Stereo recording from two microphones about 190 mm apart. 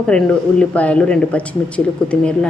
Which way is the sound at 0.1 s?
5° left (ahead or behind).